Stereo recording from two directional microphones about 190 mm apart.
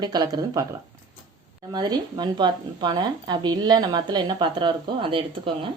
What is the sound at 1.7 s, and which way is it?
Speech, 20° right (ahead or behind).